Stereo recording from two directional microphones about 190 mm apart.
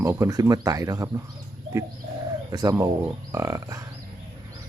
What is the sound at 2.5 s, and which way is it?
Speech, 20° right (ahead or behind).